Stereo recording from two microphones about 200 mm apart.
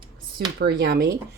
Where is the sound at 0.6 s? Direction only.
55° right (ahead or behind).